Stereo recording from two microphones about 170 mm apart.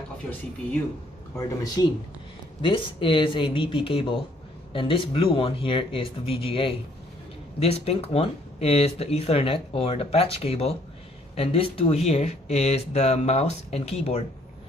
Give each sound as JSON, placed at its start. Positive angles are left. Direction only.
{"t": 1.4, "sound": "speech", "side_deg": 20}